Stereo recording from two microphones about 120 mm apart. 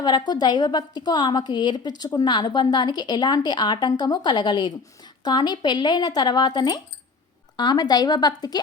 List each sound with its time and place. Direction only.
0.0 s a woman's voice: 35° left (ahead or behind)